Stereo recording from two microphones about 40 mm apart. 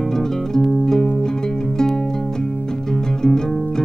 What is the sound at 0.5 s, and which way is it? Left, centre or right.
Music, centre.